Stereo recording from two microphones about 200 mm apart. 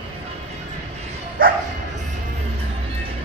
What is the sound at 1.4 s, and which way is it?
Bow-wow, 45° right (ahead or behind).